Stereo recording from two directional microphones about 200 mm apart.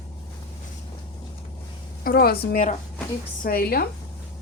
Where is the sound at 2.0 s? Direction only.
50° left (ahead or behind).